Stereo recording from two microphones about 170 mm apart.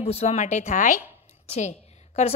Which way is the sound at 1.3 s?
40° left (ahead or behind).